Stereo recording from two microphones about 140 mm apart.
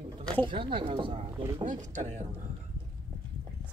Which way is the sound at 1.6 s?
60° right (ahead or behind).